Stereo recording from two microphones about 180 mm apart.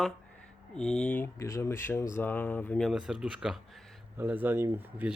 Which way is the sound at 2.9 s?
5° right (ahead or behind).